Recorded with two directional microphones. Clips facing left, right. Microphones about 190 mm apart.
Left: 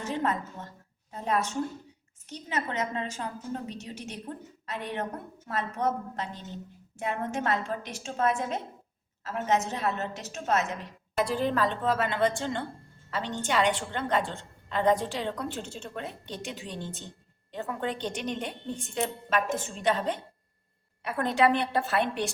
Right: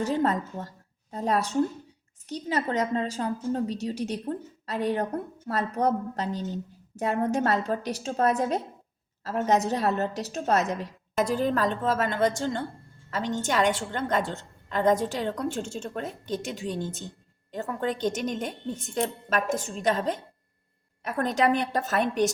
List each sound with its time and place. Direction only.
0.0 s a woman's voice: 35° right (ahead or behind)